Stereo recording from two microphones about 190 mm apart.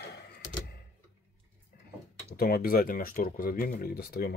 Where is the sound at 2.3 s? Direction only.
55° left (ahead or behind).